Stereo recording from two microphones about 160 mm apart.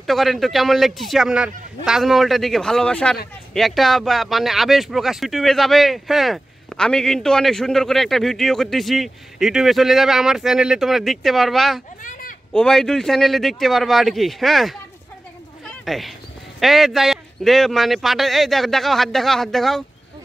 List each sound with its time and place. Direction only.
0.0 s speech: centre (ahead or behind)
12.0 s a sound: 55° left (ahead or behind)
12.5 s speech: 5° left (ahead or behind)